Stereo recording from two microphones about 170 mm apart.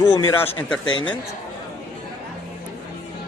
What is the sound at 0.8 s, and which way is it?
Speech, 25° left (ahead or behind).